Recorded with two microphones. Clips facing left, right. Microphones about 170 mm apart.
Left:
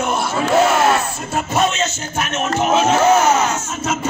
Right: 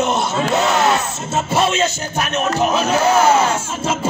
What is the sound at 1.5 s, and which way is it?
Speech, 30° right (ahead or behind).